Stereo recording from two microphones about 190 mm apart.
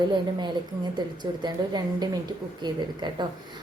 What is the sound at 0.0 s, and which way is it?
Speech, 25° right (ahead or behind).